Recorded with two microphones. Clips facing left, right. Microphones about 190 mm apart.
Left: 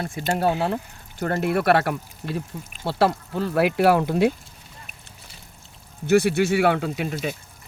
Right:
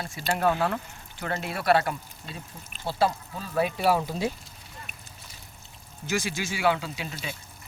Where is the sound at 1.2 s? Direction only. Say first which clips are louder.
Left 9 dB; 55° left (ahead or behind).